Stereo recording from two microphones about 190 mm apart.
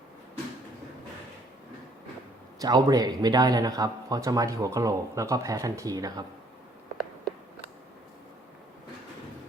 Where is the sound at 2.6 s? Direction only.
20° right (ahead or behind).